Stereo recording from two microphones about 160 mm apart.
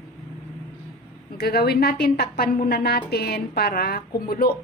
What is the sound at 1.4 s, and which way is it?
A woman's voice, 80° left.